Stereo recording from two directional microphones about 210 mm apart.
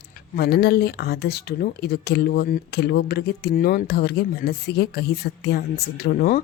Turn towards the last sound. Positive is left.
turn(degrees=45)  # may be behind; listen again after turning